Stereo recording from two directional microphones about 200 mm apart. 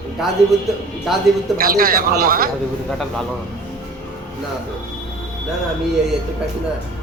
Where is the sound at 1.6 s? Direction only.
45° right (ahead or behind).